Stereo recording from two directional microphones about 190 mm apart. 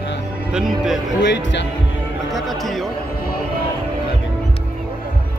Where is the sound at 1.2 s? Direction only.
65° left (ahead or behind).